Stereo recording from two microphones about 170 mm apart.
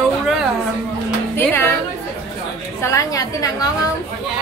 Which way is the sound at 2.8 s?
20° left (ahead or behind).